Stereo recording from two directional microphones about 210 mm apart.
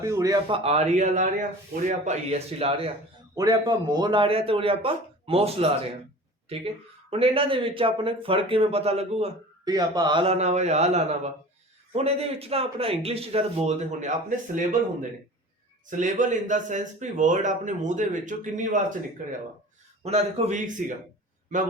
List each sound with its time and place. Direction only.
0.0 s a man's voice: 15° right (ahead or behind)
3.3 s a man's voice: 15° right (ahead or behind)
7.1 s a man's voice: 25° right (ahead or behind)
9.6 s a man's voice: 20° right (ahead or behind); by 14.8 s 40° right (ahead or behind)
15.9 s speech: 35° right (ahead or behind)
20.1 s speech: 30° right (ahead or behind)